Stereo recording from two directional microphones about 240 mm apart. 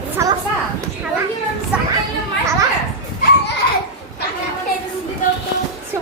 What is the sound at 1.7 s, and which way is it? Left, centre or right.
Speech, centre.